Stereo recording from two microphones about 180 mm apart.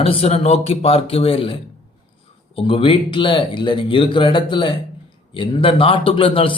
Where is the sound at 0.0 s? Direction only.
30° left (ahead or behind).